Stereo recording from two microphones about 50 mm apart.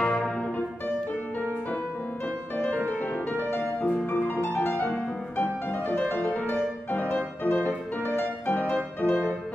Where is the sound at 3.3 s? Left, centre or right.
Left.